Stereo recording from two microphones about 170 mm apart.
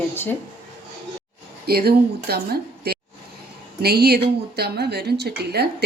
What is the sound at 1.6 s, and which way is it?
Speech, 65° right (ahead or behind).